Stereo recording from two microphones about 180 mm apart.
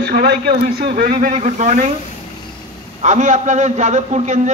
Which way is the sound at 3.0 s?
40° right (ahead or behind).